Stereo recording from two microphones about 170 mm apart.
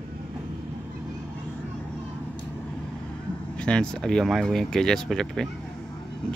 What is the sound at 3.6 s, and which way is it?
Speech, 5° left (ahead or behind).